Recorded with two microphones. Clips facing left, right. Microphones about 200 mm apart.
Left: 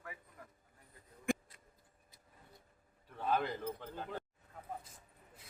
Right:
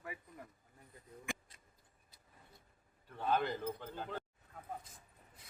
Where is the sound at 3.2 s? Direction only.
Centre (ahead or behind).